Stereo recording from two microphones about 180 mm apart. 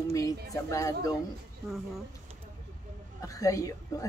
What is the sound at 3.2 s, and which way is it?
Speech, 20° left (ahead or behind).